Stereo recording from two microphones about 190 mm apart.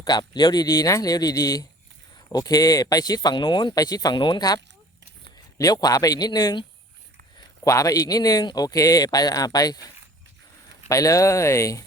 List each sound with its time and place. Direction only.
0.0 s a man's voice: 20° left (ahead or behind)